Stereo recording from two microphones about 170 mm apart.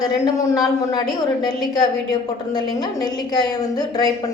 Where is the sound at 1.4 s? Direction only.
20° left (ahead or behind).